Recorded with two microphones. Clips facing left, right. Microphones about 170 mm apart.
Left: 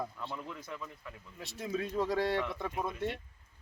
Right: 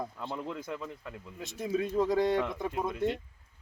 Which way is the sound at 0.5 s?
60° right (ahead or behind).